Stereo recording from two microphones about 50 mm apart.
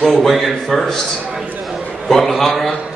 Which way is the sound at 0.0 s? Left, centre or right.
Centre.